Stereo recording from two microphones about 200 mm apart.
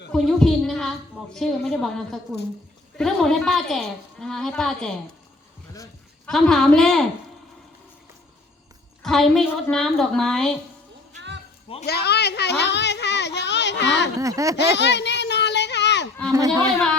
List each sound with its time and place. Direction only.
0.1 s a woman's voice: centre (ahead or behind)
6.2 s a woman's voice: 5° left (ahead or behind)
9.0 s a woman's voice: centre (ahead or behind)
11.9 s a child's voice: 55° left (ahead or behind)
14.2 s speech: 15° right (ahead or behind)
14.6 s a sound: 60° left (ahead or behind)